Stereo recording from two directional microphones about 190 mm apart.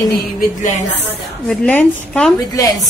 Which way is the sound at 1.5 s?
5° left (ahead or behind).